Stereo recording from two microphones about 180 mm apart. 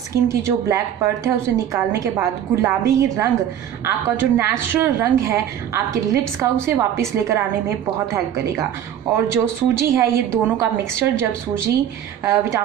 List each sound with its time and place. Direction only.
0.1 s a woman's voice: 15° right (ahead or behind)
6.6 s a woman's voice: 15° right (ahead or behind)
9.3 s a woman's voice: 15° right (ahead or behind)